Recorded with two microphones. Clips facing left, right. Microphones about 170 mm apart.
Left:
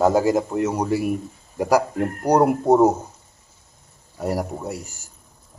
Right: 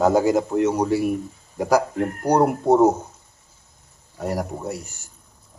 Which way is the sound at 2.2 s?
10° left (ahead or behind).